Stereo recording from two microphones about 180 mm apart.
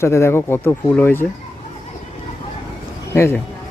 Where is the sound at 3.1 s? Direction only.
10° left (ahead or behind).